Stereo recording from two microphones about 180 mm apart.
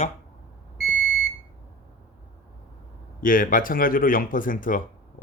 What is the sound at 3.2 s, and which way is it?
Speech, 50° left (ahead or behind).